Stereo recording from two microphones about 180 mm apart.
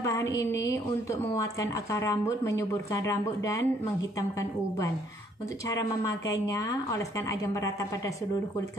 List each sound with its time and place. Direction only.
0.0 s a woman's voice: 15° left (ahead or behind)
6.3 s speech: 20° left (ahead or behind)